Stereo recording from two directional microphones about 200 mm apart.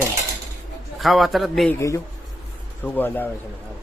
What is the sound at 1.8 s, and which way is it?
Speech, 15° left (ahead or behind).